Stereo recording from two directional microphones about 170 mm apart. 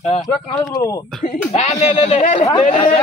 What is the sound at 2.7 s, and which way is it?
Speech, 30° left (ahead or behind).